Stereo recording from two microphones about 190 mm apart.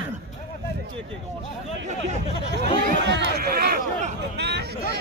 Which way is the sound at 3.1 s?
65° right (ahead or behind).